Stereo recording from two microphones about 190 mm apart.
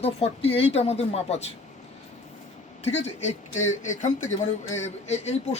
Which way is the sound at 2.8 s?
35° left (ahead or behind).